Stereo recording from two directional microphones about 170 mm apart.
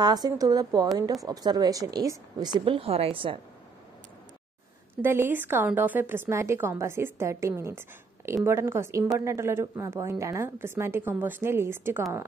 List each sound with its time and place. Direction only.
0.0 s a woman's voice: 25° right (ahead or behind)
4.9 s a woman's voice: 15° right (ahead or behind)